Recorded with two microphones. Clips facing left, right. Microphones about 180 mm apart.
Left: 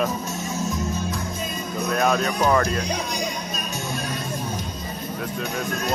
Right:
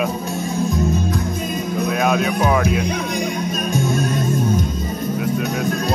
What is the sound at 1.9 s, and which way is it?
Speech, 5° right (ahead or behind).